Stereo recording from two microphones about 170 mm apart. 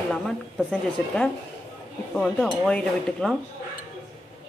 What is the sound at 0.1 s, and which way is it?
A woman's voice, 5° left (ahead or behind).